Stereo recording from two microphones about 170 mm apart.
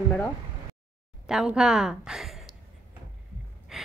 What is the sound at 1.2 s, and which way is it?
A woman's voice, 5° right (ahead or behind).